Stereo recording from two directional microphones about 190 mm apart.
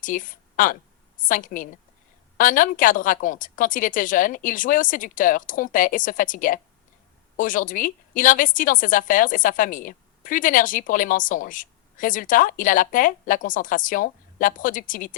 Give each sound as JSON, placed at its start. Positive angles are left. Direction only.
{"t": 0.0, "sound": "a woman's voice", "side_deg": 45}